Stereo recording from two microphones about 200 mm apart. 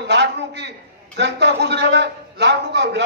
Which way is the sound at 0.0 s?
60° right (ahead or behind).